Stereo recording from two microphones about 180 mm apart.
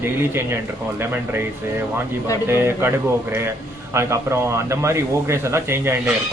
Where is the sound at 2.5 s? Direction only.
15° right (ahead or behind).